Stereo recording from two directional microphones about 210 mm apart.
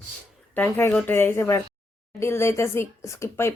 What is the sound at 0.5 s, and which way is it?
Speech, 10° left (ahead or behind).